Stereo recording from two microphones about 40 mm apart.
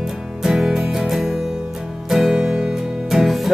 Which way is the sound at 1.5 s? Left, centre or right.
Centre.